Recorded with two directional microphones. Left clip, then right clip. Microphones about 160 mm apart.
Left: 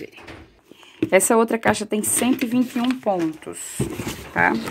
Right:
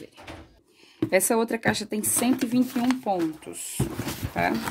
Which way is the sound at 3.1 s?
5° right (ahead or behind).